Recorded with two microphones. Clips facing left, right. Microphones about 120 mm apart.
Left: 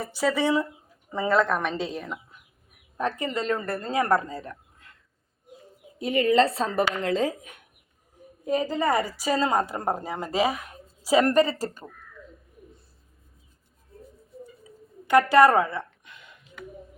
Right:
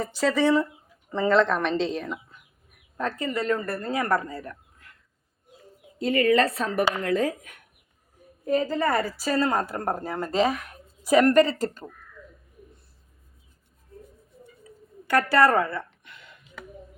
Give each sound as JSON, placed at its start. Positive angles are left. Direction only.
{"t": 0.0, "sound": "a woman's voice", "side_deg": 10}
{"t": 6.0, "sound": "a woman's voice", "side_deg": 20}
{"t": 15.0, "sound": "a sound", "side_deg": 20}